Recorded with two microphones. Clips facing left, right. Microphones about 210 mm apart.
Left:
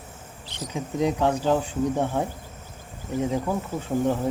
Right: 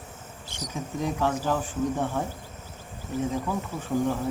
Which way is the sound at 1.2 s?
20° left (ahead or behind).